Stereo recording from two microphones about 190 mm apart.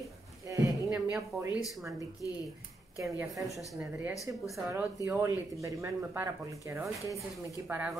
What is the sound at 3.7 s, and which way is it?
Speech, 10° right (ahead or behind).